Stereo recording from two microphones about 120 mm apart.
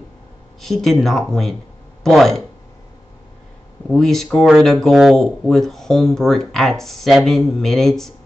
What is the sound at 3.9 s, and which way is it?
Speech, centre (ahead or behind).